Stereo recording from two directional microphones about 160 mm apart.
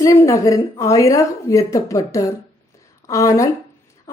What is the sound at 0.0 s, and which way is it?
Speech, 15° left (ahead or behind).